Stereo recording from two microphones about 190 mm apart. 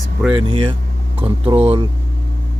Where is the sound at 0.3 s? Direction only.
25° right (ahead or behind).